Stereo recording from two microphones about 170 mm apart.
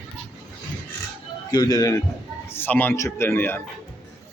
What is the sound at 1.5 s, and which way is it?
Speech, 20° left (ahead or behind).